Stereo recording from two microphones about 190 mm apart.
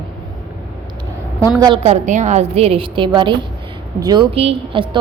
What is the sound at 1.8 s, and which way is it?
A woman's voice, 40° right (ahead or behind).